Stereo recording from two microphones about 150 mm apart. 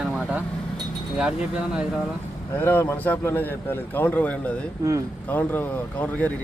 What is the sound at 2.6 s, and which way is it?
A man's voice, 15° left (ahead or behind).